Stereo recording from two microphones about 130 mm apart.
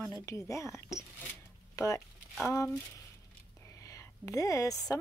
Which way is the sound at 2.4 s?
25° left (ahead or behind).